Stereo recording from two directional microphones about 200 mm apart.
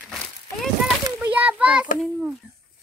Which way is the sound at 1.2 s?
10° right (ahead or behind).